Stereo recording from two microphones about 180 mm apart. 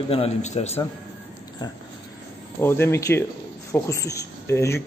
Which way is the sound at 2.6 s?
15° left (ahead or behind).